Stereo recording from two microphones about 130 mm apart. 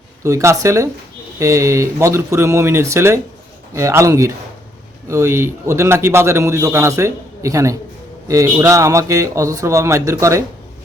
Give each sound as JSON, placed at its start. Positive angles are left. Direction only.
{"t": 0.2, "sound": "a man's voice", "side_deg": -25}